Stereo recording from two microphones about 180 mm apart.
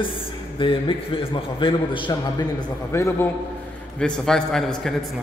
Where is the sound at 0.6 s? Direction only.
30° left (ahead or behind).